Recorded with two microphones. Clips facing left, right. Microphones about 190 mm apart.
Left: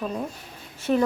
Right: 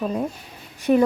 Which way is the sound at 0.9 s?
15° right (ahead or behind).